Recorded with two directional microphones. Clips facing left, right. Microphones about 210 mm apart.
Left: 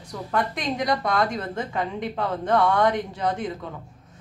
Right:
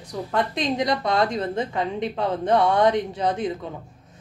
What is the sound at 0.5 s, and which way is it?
A woman's voice, 20° right (ahead or behind).